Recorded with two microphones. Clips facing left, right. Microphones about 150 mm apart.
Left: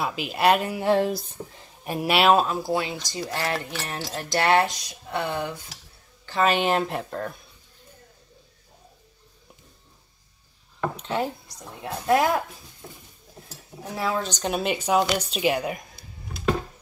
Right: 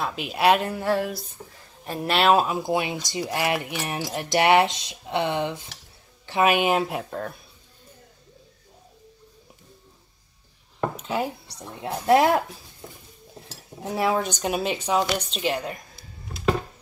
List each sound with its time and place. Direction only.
0.0 s speech: centre (ahead or behind)
0.8 s speech: 25° left (ahead or behind)
1.9 s speech: 10° left (ahead or behind)
2.4 s speech: 15° right (ahead or behind)
11.0 s speech: 5° right (ahead or behind)
11.8 s speech: 20° right (ahead or behind)
13.8 s speech: 20° right (ahead or behind)
14.3 s speech: 5° right (ahead or behind)